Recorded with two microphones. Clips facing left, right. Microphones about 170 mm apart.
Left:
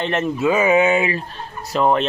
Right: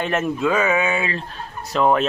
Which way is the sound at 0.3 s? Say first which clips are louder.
Left 4 dB; 5° left (ahead or behind).